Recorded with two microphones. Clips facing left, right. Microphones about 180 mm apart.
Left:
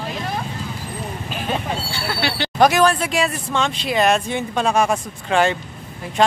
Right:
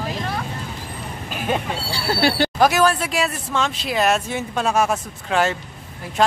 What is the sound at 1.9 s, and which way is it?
Speech, 40° right (ahead or behind).